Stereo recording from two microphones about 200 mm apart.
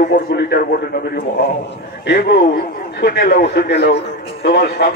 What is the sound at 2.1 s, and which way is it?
A man's voice, 55° left (ahead or behind).